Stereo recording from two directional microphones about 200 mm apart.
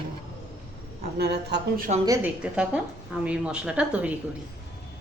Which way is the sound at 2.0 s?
15° right (ahead or behind).